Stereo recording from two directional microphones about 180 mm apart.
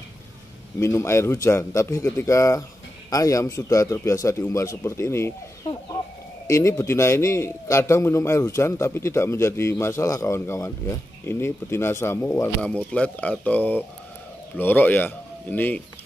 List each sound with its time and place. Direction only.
0.7 s a man's voice: 15° left (ahead or behind)